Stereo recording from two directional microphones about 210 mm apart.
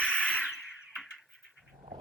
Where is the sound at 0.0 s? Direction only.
5° left (ahead or behind).